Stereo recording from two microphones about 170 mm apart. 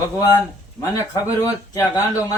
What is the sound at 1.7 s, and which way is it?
Speech, 20° left (ahead or behind).